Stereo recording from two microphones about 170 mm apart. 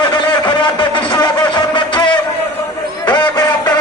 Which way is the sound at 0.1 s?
25° left (ahead or behind).